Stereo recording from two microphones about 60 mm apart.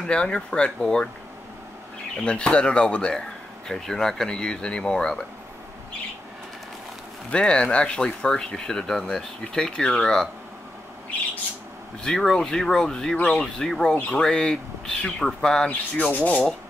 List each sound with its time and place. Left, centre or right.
0.0 s speech: centre
2.2 s speech: centre
7.2 s speech: centre
12.0 s speech: centre
15.7 s rub: left